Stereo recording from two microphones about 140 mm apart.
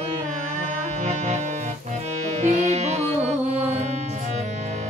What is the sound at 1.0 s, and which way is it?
Music, 55° right (ahead or behind).